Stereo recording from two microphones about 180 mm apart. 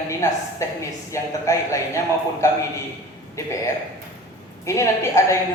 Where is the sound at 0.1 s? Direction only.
15° left (ahead or behind).